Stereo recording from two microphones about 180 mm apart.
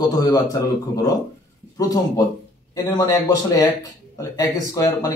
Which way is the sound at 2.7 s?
20° left (ahead or behind).